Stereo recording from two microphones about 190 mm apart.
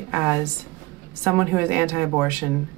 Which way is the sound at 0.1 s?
10° right (ahead or behind).